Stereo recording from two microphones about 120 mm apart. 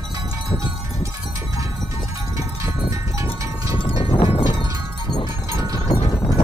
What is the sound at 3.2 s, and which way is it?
Cowbell, 45° left (ahead or behind).